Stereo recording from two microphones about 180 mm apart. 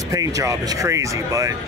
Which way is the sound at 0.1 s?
20° right (ahead or behind).